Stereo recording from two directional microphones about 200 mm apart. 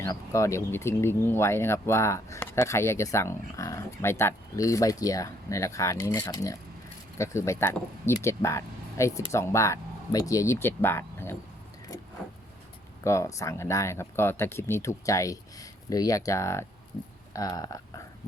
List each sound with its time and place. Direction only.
0.0 s speech: 15° left (ahead or behind)
13.1 s speech: 15° left (ahead or behind)